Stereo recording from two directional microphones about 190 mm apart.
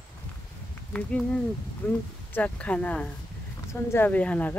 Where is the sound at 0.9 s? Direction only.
5° left (ahead or behind).